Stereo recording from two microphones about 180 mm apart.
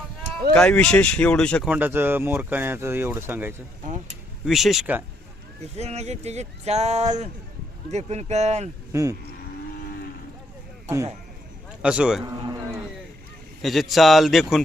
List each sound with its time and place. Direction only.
0.5 s speech: 5° left (ahead or behind)
1.7 s speech: 10° right (ahead or behind)
4.4 s speech: centre (ahead or behind)
5.7 s speech: 35° right (ahead or behind)
8.9 s speech: 15° right (ahead or behind)
10.8 s speech: 15° right (ahead or behind)
11.8 s speech: 5° right (ahead or behind)
13.6 s speech: centre (ahead or behind)